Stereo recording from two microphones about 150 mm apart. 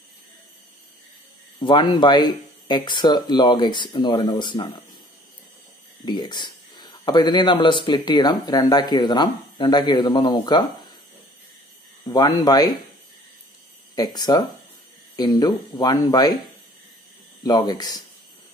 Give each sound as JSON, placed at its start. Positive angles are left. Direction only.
{"t": 1.6, "sound": "speech", "side_deg": 30}
{"t": 6.0, "sound": "speech", "side_deg": 30}
{"t": 12.0, "sound": "speech", "side_deg": 25}
{"t": 13.9, "sound": "speech", "side_deg": 25}
{"t": 17.4, "sound": "speech", "side_deg": 25}